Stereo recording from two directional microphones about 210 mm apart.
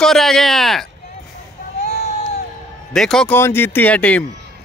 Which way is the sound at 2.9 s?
5° left (ahead or behind).